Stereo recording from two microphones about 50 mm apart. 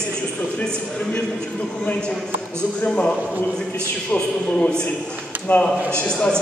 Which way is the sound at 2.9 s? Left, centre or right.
Centre.